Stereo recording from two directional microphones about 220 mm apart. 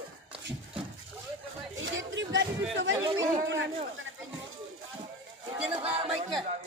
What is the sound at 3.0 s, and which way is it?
Speech, 15° right (ahead or behind).